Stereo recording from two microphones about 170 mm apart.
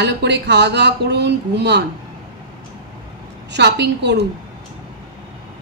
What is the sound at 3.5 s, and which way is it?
Speech, 85° right.